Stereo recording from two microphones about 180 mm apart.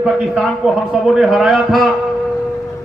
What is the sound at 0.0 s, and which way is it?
A man's voice, centre (ahead or behind).